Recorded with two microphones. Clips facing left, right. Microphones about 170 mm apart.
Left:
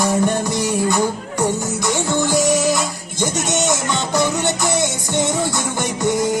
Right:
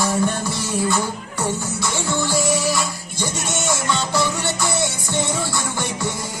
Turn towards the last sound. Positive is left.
turn(degrees=20)  # may be behind; listen again after turning